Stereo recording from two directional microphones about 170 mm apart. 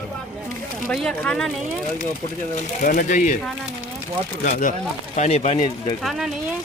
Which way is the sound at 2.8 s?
55° left (ahead or behind).